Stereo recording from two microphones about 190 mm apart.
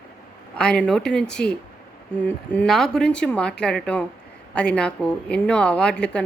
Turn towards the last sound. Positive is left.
turn(degrees=5)  # may be behind; listen again after turning